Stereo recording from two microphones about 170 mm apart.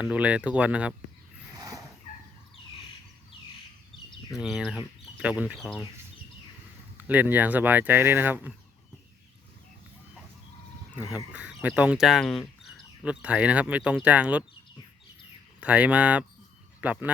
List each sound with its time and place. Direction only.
0.0 s speech: 5° right (ahead or behind)
1.5 s turkey: 20° right (ahead or behind)
4.3 s speech: 5° right (ahead or behind)
6.9 s speech: 10° right (ahead or behind)
11.1 s speech: 5° right (ahead or behind)
15.6 s speech: 10° right (ahead or behind)